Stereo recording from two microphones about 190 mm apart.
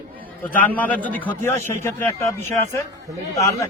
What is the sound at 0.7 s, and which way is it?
A man's voice, 10° left (ahead or behind).